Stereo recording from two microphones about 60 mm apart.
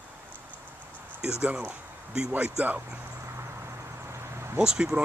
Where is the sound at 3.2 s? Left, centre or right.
Right.